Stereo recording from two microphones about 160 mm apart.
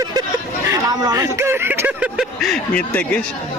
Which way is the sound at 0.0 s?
25° right (ahead or behind).